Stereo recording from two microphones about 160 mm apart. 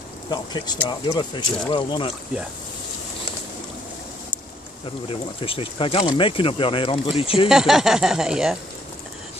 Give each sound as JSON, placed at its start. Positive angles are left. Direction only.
{"t": 0.3, "sound": "speech", "side_deg": 25}
{"t": 5.0, "sound": "speech", "side_deg": 35}
{"t": 7.4, "sound": "speech", "side_deg": -5}